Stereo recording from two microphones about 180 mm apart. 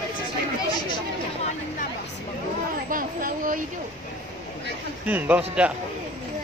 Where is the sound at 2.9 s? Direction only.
50° right (ahead or behind).